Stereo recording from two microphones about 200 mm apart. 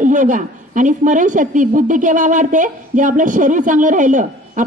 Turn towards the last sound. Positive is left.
turn(degrees=-40)  # may be behind; listen again after turning